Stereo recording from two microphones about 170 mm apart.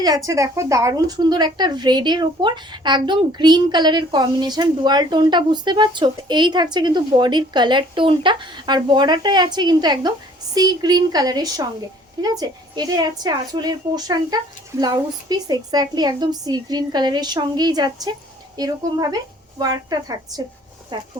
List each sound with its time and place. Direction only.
0.0 s a woman's voice: 20° right (ahead or behind)